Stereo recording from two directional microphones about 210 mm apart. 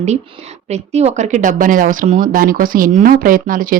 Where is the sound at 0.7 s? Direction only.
30° right (ahead or behind).